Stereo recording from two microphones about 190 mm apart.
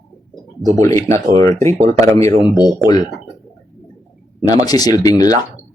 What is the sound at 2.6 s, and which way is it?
Speech, 20° left (ahead or behind).